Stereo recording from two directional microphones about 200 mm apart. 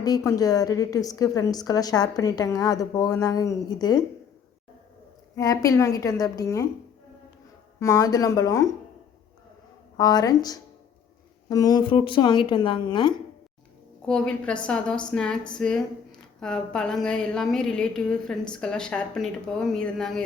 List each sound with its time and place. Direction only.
0.0 s a woman's voice: 20° left (ahead or behind)
5.4 s a woman's voice: 15° left (ahead or behind)
7.8 s a woman's voice: 15° left (ahead or behind)
10.0 s speech: 20° left (ahead or behind)
14.0 s a woman's voice: 5° left (ahead or behind)